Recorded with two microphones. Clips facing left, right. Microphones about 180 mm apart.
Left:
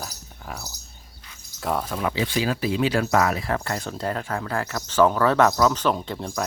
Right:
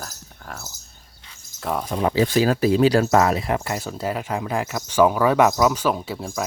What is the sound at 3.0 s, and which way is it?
Speech, 25° right (ahead or behind).